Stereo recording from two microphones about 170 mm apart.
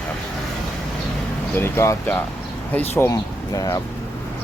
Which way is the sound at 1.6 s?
15° left (ahead or behind).